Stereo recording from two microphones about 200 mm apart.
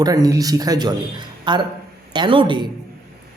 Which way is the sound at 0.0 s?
20° right (ahead or behind).